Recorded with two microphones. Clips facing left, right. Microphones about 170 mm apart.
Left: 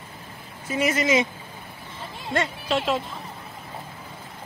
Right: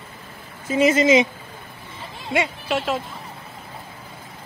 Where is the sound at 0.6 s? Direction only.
20° right (ahead or behind).